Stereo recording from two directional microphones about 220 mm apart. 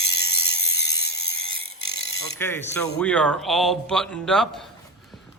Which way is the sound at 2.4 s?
10° left (ahead or behind).